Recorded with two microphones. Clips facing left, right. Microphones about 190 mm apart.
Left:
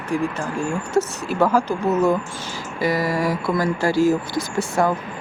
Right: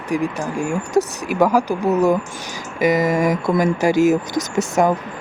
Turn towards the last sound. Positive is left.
turn(degrees=-20)  # may be behind; listen again after turning